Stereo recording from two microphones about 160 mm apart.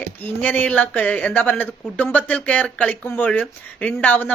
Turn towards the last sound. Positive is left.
turn(degrees=10)  # may be behind; listen again after turning